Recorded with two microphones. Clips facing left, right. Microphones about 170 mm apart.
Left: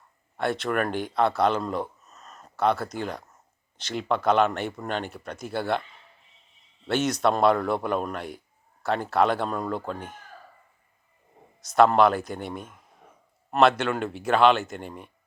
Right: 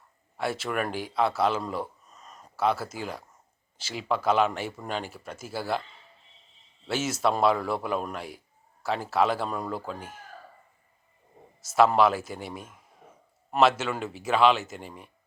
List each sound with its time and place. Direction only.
0.3 s speech: 5° right (ahead or behind)
6.8 s speech: 5° right (ahead or behind)
11.6 s speech: 5° right (ahead or behind)